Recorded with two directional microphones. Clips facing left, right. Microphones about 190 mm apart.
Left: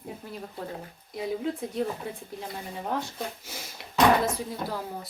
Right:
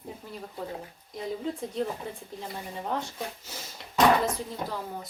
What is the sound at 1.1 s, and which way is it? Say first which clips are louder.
Speech: left 3 dB; 5° left (ahead or behind).